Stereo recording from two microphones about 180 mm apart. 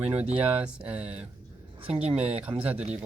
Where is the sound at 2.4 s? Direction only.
5° right (ahead or behind).